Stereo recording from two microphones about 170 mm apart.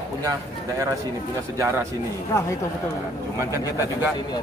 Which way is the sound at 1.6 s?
15° right (ahead or behind).